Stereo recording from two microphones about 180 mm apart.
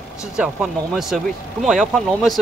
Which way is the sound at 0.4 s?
5° right (ahead or behind).